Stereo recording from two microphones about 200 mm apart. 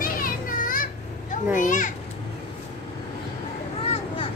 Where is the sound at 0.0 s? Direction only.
45° left (ahead or behind).